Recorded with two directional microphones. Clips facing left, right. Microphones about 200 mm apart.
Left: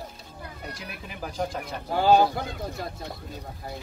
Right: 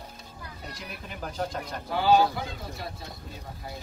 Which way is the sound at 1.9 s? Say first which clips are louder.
Left 2 dB; 45° left (ahead or behind).